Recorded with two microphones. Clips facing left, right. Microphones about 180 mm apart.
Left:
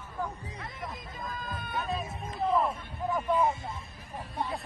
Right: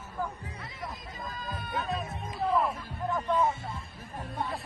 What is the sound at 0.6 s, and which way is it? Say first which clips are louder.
Hubbub: left 1 dB; 50° left (ahead or behind).